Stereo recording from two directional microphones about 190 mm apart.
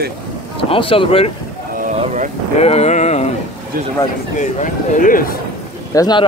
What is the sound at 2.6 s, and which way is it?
Speech, 35° left (ahead or behind).